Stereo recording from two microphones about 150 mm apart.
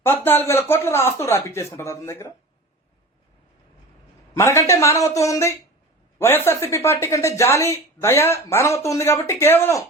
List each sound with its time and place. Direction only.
0.3 s speech: 15° left (ahead or behind)
4.4 s a woman's voice: 20° left (ahead or behind)